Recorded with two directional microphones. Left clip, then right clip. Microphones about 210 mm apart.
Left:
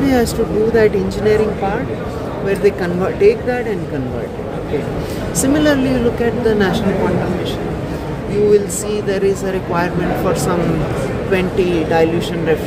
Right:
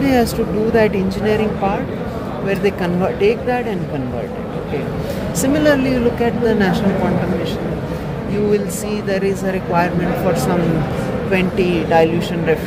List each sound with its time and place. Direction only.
0.7 s speech: 5° left (ahead or behind)
2.4 s speech: 5° left (ahead or behind)
5.4 s speech: 5° left (ahead or behind)
8.5 s speech: 10° left (ahead or behind)
11.3 s speech: 5° left (ahead or behind)